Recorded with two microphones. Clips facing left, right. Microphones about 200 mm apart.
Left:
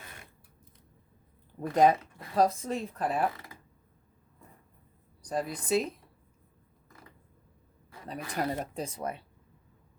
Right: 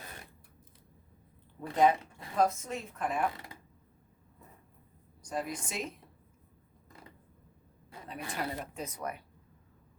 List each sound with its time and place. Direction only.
1.6 s speech: 40° left (ahead or behind)
5.2 s speech: 35° left (ahead or behind)
8.0 s speech: 40° left (ahead or behind)